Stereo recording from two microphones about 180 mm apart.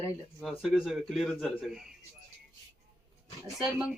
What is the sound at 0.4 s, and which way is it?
A man's voice, centre (ahead or behind).